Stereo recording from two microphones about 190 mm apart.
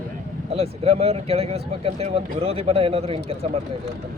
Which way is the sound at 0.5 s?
30° right (ahead or behind).